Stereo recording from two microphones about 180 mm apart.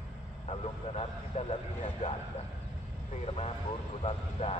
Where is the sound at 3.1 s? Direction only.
35° left (ahead or behind).